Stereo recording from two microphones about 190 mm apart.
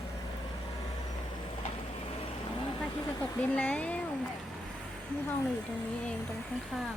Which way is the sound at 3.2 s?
10° left (ahead or behind).